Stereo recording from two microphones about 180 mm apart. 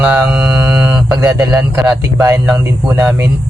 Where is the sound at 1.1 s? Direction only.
20° right (ahead or behind).